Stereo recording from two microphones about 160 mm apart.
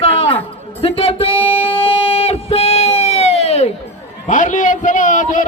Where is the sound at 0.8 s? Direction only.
35° left (ahead or behind).